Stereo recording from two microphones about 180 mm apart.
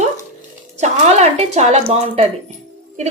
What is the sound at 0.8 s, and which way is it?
A woman's voice, 40° right (ahead or behind).